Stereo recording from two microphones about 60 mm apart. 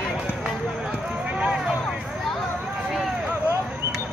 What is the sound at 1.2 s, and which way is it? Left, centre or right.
Vehicle, centre.